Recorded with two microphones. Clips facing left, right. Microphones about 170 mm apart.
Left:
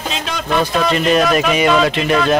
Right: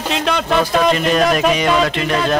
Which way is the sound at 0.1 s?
65° right (ahead or behind).